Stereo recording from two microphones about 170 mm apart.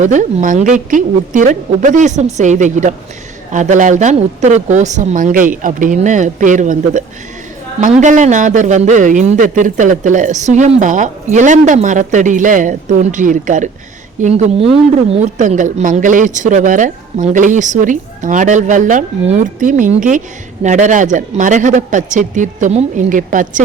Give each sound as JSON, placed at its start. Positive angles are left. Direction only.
{"t": 0.0, "sound": "a woman's voice", "side_deg": -45}